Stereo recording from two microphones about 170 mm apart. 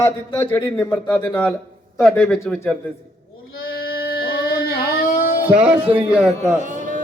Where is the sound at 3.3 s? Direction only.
65° left (ahead or behind).